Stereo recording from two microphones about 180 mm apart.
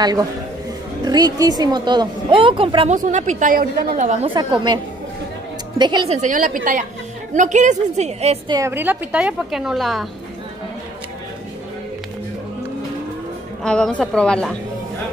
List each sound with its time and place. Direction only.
0.0 s a woman's voice: 20° right (ahead or behind)
3.0 s a woman's voice: 40° right (ahead or behind)
4.4 s a woman's voice: 25° right (ahead or behind)
5.8 s a woman's voice: 25° right (ahead or behind)
6.2 s a woman's voice: 45° right (ahead or behind)
8.5 s a woman's voice: 15° right (ahead or behind); by 10.0 s centre (ahead or behind)
13.6 s a woman's voice: 5° left (ahead or behind)